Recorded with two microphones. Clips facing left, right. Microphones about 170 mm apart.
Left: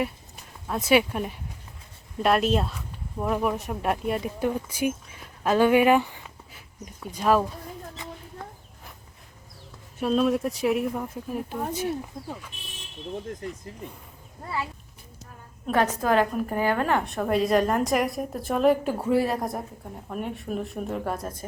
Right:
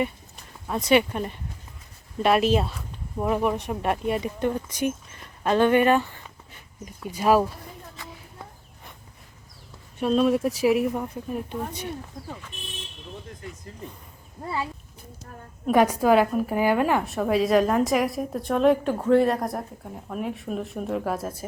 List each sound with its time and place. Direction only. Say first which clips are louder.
0.7 s a woman's voice: right 1 dB; 5° left (ahead or behind)
6.8 s a woman's voice: right 2 dB; 5° right (ahead or behind)
8.0 s a sound: left 2 dB; 20° left (ahead or behind)
10.0 s a woman's voice: right 2 dB; centre (ahead or behind)
15.6 s a woman's voice: right 4 dB; 10° right (ahead or behind)